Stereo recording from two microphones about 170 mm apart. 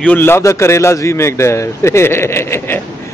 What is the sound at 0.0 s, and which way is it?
A man's voice, 10° left (ahead or behind).